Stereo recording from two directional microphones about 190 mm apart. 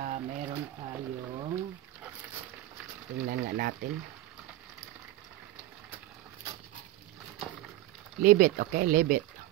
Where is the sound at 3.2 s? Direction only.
50° right (ahead or behind).